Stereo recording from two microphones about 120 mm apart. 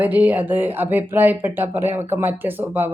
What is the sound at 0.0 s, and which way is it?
Speech, 15° right (ahead or behind).